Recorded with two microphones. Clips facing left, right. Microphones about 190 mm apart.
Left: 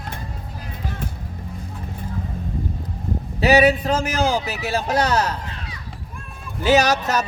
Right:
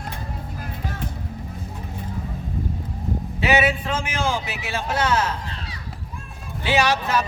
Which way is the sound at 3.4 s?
40° left (ahead or behind).